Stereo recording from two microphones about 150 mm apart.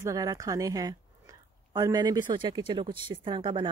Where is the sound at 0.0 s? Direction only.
20° right (ahead or behind).